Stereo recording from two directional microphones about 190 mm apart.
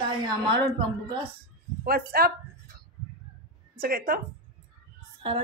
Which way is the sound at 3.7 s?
50° right (ahead or behind).